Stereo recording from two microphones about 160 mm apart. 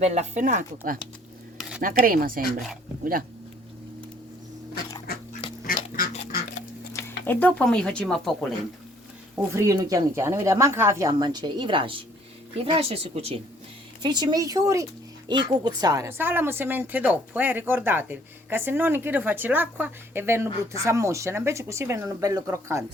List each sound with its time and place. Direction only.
0.0 s speech: 45° right (ahead or behind); by 3.2 s 60° right (ahead or behind)
5.1 s dog: 70° left (ahead or behind)
6.3 s a sound: 75° left (ahead or behind)
7.3 s speech: 10° left (ahead or behind)
9.5 s speech: 20° right (ahead or behind); by 13.4 s 40° right (ahead or behind)
14.0 s speech: 25° right (ahead or behind)